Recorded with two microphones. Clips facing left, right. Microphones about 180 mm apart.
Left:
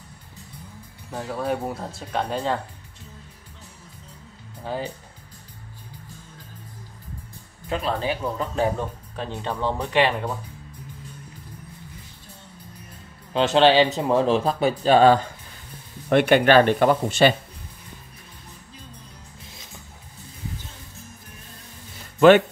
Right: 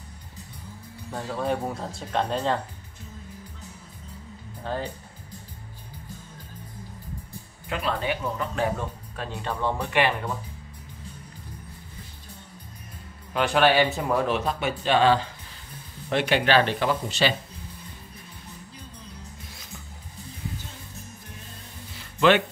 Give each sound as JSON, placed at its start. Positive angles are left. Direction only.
{"t": 1.1, "sound": "speech", "side_deg": 0}
{"t": 4.6, "sound": "speech", "side_deg": 10}
{"t": 7.7, "sound": "speech", "side_deg": 30}
{"t": 8.7, "sound": "speech", "side_deg": 20}
{"t": 13.3, "sound": "speech", "side_deg": 25}
{"t": 16.1, "sound": "speech", "side_deg": 55}